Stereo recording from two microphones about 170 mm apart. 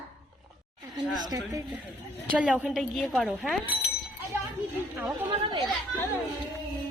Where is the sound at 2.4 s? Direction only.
5° right (ahead or behind).